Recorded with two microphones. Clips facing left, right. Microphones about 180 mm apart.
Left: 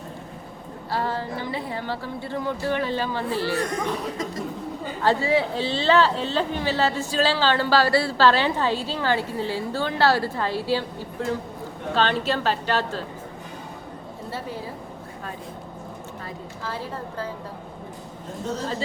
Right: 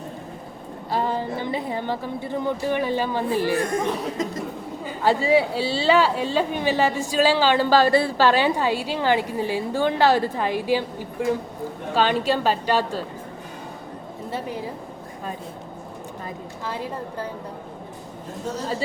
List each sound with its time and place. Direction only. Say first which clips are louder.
0.9 s a man's voice: right 3 dB; 20° right (ahead or behind)
3.7 s chuckle: right 3 dB; 25° right (ahead or behind)
5.0 s a man's voice: right 2 dB; 10° right (ahead or behind)
14.3 s a woman's voice: right 3 dB; 15° right (ahead or behind)
16.6 s a man's voice: right 2 dB; 15° right (ahead or behind)